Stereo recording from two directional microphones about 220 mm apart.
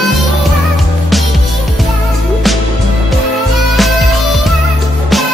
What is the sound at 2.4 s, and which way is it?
Music, centre (ahead or behind).